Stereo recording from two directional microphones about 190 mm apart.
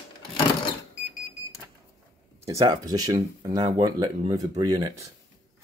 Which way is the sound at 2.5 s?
20° right (ahead or behind).